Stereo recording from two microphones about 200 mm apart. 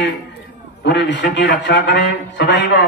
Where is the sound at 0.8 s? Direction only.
60° left (ahead or behind).